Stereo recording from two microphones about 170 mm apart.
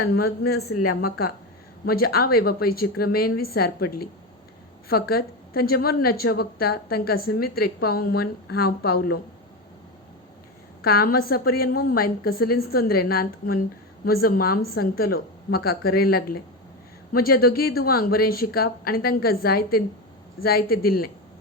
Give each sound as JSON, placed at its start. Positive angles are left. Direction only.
{"t": 0.0, "sound": "a woman's voice", "side_deg": 70}
{"t": 10.8, "sound": "a woman's voice", "side_deg": 65}